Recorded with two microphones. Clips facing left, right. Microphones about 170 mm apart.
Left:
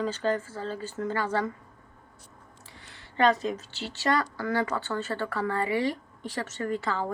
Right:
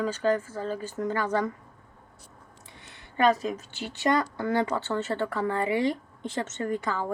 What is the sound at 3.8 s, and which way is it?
Speech, 15° right (ahead or behind).